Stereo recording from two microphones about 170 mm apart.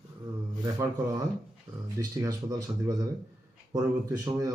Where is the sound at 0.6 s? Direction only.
20° right (ahead or behind).